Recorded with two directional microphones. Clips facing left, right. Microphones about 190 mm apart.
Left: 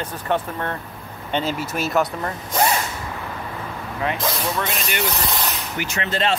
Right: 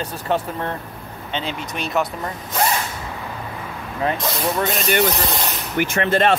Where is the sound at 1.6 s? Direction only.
5° left (ahead or behind).